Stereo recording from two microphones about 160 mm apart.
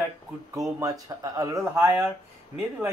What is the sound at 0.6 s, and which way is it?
Speech, 20° right (ahead or behind).